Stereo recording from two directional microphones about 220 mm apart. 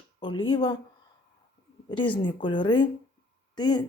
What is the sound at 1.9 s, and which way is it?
Speech, 20° left (ahead or behind).